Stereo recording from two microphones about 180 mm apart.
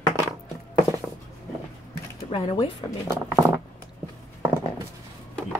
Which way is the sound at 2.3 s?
30° left (ahead or behind).